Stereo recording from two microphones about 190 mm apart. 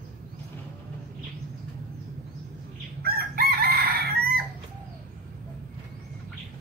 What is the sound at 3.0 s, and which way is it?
Chicken, 55° right (ahead or behind).